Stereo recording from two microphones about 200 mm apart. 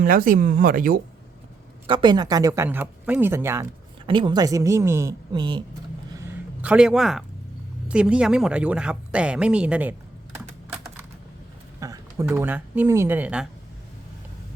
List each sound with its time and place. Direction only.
0.0 s speech: 45° right (ahead or behind)
1.9 s speech: 25° right (ahead or behind)
4.0 s speech: 25° right (ahead or behind)
6.1 s a sound: 5° right (ahead or behind)
7.9 s speech: 5° right (ahead or behind)
11.8 s speech: 15° right (ahead or behind)